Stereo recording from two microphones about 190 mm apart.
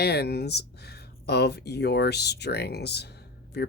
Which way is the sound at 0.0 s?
60° left (ahead or behind).